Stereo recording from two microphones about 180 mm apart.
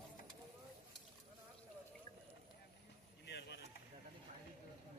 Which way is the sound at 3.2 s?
70° left (ahead or behind).